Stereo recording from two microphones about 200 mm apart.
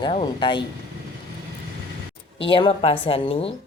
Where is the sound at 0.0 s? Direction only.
25° left (ahead or behind).